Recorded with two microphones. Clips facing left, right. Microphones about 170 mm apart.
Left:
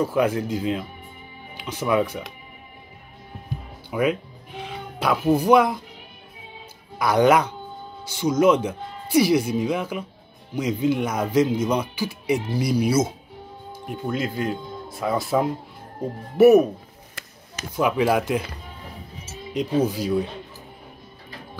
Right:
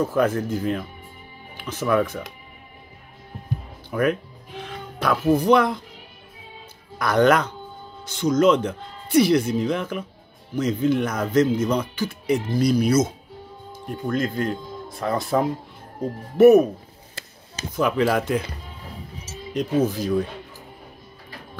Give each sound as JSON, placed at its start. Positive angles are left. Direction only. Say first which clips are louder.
{"t": 0.0, "sound": "speech", "louder": "even", "side_deg": 10}
{"t": 3.9, "sound": "music", "louder": "even", "side_deg": 10}
{"t": 7.0, "sound": "speech", "louder": "left 1 dB", "side_deg": 10}
{"t": 17.2, "sound": "chopping", "louder": "right 2 dB", "side_deg": -30}
{"t": 17.7, "sound": "speech", "louder": "even", "side_deg": 10}
{"t": 19.5, "sound": "speech", "louder": "even", "side_deg": 10}